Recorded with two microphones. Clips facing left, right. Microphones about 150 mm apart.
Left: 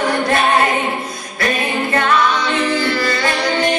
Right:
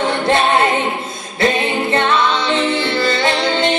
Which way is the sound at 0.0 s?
25° right (ahead or behind).